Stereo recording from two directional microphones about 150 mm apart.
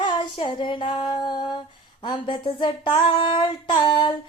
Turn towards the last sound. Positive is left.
turn(degrees=30)  # may be behind; listen again after turning